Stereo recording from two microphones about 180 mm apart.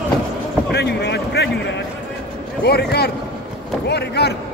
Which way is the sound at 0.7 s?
65° left (ahead or behind).